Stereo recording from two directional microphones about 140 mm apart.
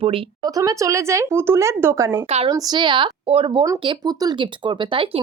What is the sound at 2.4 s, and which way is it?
Speech, 30° right (ahead or behind).